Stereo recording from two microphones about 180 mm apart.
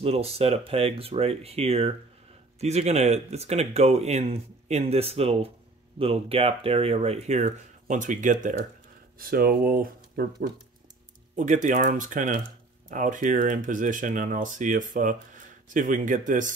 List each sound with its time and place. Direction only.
0.0 s speech: 35° right (ahead or behind)
9.2 s speech: 55° right (ahead or behind)
11.3 s speech: 45° right (ahead or behind)